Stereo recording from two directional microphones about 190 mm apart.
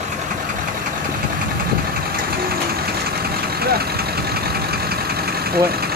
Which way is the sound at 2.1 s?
50° right (ahead or behind).